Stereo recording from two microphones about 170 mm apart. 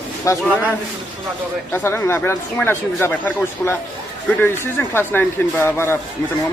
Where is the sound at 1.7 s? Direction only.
15° left (ahead or behind).